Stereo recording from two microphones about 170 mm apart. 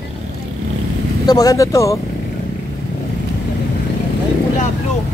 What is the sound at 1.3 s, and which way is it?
Speech, 20° left (ahead or behind).